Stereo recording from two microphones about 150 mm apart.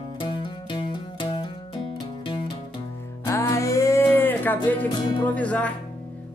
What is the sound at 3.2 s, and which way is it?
Music, 20° left (ahead or behind).